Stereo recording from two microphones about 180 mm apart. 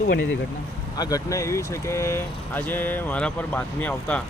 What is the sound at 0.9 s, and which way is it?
Speech, 20° left (ahead or behind).